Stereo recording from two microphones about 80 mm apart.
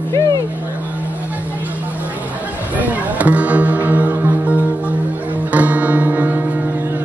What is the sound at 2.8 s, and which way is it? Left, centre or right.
Music, centre.